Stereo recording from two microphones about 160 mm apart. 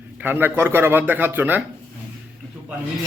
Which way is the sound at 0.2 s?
10° right (ahead or behind).